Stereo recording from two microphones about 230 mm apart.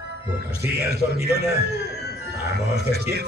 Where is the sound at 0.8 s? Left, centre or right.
Right.